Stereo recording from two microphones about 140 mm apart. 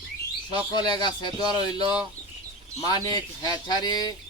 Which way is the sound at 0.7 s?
30° left (ahead or behind).